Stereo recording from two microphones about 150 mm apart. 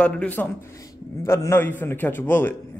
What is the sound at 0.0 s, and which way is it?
A man's voice, 10° left (ahead or behind).